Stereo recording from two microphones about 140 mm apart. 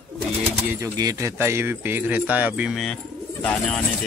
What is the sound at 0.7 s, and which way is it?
Speech, 25° right (ahead or behind).